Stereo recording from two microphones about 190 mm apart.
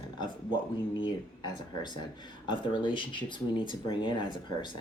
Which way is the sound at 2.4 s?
25° left (ahead or behind).